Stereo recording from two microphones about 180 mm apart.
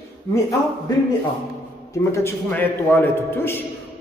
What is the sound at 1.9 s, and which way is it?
A man's voice, 15° left (ahead or behind).